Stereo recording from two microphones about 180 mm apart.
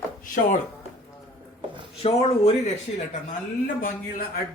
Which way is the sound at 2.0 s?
35° left (ahead or behind).